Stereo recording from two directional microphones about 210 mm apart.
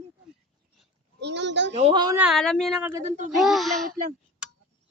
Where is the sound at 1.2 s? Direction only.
55° right (ahead or behind).